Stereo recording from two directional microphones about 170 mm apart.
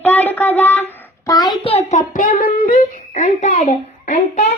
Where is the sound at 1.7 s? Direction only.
45° left (ahead or behind).